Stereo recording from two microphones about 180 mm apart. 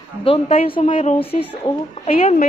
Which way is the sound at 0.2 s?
30° left (ahead or behind).